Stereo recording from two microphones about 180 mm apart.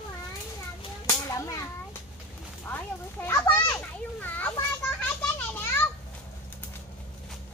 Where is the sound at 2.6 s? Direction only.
10° left (ahead or behind).